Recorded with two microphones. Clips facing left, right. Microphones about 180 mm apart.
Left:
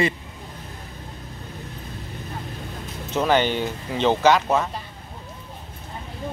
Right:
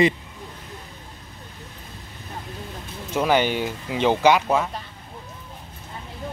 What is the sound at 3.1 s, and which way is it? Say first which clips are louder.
Speech: even; 10° right (ahead or behind).